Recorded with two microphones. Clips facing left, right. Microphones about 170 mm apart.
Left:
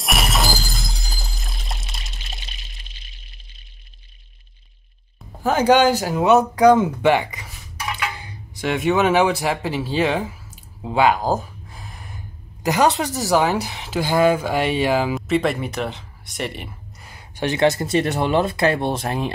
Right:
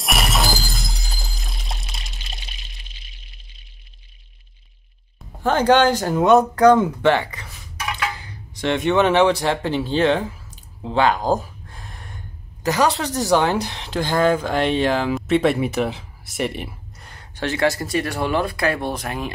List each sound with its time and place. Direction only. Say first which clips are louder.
0.0 s shatter: even; centre (ahead or behind)
5.4 s speech: even; 5° left (ahead or behind)
12.6 s speech: left 1 dB; 20° left (ahead or behind)
13.1 s speech: right 1 dB; 5° left (ahead or behind); by 19.3 s 30° left (ahead or behind)